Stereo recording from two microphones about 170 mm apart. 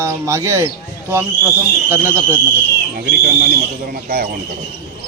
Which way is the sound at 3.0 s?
60° right (ahead or behind).